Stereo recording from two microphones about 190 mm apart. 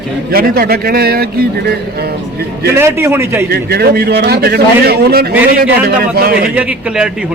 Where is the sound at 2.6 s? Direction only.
15° right (ahead or behind).